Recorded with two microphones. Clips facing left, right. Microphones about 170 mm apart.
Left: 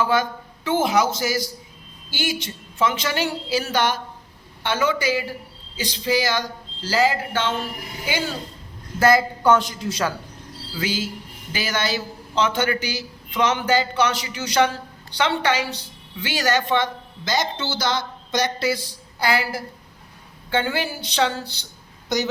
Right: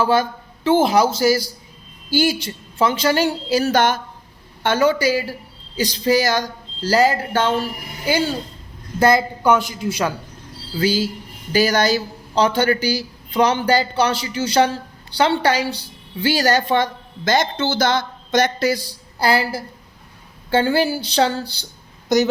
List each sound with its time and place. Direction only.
0.0 s a man's voice: 30° right (ahead or behind)
9.0 s a man's voice: 20° right (ahead or behind)
10.8 s a man's voice: 35° right (ahead or behind)
17.3 s a man's voice: 50° right (ahead or behind); by 21.7 s 35° right (ahead or behind)